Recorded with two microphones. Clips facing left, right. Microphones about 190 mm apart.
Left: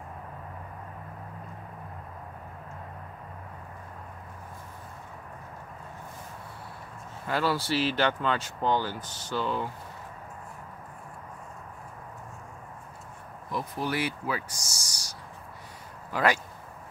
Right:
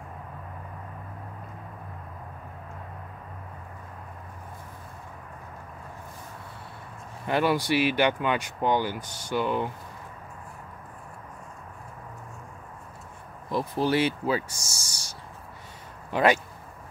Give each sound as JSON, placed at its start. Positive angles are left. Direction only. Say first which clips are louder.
{"t": 7.2, "sound": "speech", "louder": "right 4 dB", "side_deg": -20}
{"t": 13.5, "sound": "speech", "louder": "right 6 dB", "side_deg": -30}